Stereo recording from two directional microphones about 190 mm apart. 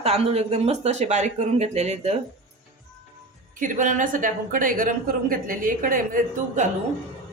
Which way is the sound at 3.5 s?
45° right (ahead or behind).